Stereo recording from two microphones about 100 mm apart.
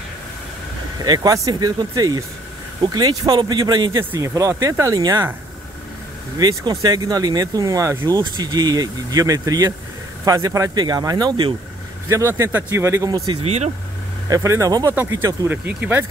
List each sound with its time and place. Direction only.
1.0 s speech: 40° right (ahead or behind)
6.3 s speech: 40° right (ahead or behind)
8.1 s speech: 45° right (ahead or behind)
10.8 s speech: 40° right (ahead or behind)
12.1 s speech: 30° right (ahead or behind)
13.4 s speech: 90° right
14.3 s speech: 30° right (ahead or behind)
15.4 s speech: 20° right (ahead or behind)